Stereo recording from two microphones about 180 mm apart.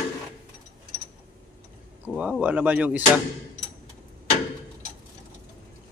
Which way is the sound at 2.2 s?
5° right (ahead or behind).